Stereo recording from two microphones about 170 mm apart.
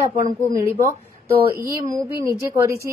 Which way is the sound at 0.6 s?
15° right (ahead or behind).